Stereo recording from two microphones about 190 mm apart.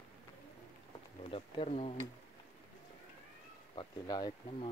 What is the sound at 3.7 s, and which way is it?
Speech, 20° left (ahead or behind).